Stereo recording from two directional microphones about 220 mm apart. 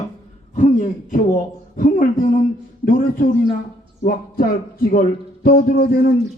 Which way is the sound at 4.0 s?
40° left (ahead or behind).